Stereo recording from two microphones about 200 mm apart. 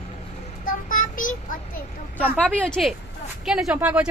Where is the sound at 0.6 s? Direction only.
40° left (ahead or behind).